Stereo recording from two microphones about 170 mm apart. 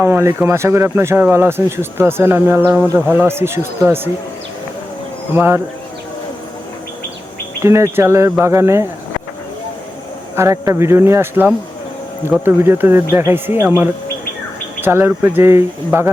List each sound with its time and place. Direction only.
0.0 s speech: 15° right (ahead or behind)
5.3 s speech: 10° right (ahead or behind)
7.6 s speech: 15° right (ahead or behind)
10.3 s speech: 20° right (ahead or behind)